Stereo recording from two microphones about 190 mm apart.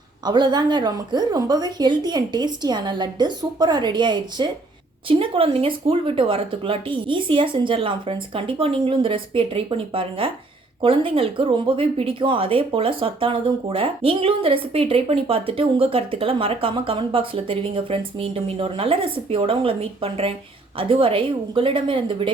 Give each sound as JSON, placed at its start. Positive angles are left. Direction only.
{"t": 0.3, "sound": "speech", "side_deg": -20}